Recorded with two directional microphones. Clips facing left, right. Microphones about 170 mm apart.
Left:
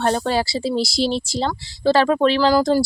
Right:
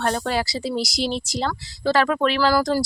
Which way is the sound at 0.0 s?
30° left (ahead or behind).